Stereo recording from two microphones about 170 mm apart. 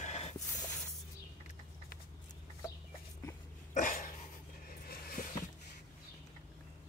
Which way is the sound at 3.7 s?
50° left (ahead or behind).